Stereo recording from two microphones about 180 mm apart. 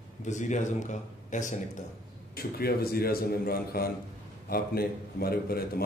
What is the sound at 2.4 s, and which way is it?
A man's voice, 55° left (ahead or behind).